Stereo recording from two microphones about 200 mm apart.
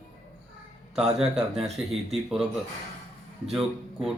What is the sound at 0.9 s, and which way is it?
A man's voice, 5° right (ahead or behind).